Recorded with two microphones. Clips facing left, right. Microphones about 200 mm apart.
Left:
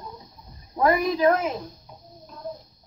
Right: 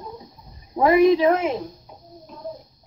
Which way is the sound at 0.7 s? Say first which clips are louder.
Right 6 dB; 25° right (ahead or behind).